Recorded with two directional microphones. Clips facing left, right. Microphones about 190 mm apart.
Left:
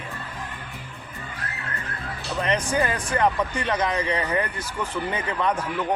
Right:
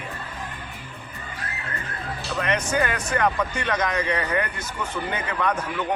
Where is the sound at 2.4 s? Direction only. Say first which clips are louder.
Left 1 dB; 30° left (ahead or behind).